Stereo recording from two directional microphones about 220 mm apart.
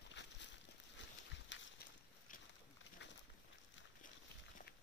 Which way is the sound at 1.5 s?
55° left (ahead or behind).